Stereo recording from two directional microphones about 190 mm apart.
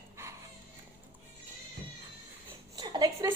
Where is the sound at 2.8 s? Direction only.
20° right (ahead or behind).